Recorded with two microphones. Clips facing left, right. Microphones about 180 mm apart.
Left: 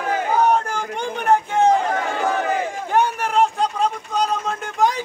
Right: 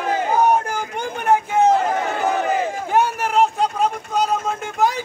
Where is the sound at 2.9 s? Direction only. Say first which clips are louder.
Even; 5° right (ahead or behind).